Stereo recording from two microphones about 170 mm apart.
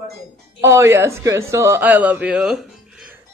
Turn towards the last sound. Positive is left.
turn(degrees=-5)  # may be behind; listen again after turning